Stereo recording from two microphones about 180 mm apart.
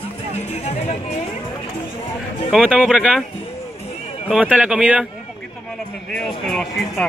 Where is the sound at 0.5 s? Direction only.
35° left (ahead or behind).